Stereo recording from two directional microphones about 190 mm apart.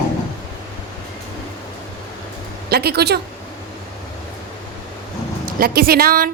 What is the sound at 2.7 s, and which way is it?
Speech, 55° right (ahead or behind).